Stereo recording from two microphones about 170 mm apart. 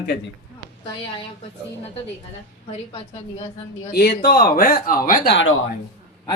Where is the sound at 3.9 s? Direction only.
65° left (ahead or behind).